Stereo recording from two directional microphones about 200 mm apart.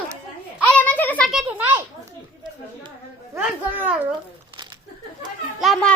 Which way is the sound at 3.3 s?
10° right (ahead or behind).